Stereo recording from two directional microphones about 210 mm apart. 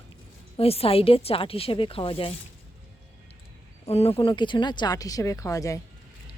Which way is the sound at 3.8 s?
30° left (ahead or behind).